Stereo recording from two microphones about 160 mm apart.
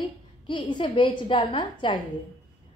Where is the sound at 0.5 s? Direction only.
30° left (ahead or behind).